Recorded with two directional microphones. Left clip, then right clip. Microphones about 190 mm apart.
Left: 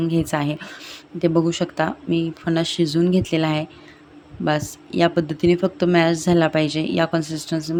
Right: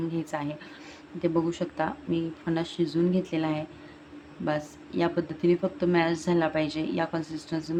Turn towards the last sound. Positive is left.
turn(degrees=20)  # may be behind; listen again after turning